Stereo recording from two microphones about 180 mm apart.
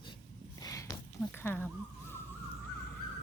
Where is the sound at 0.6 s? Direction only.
20° left (ahead or behind).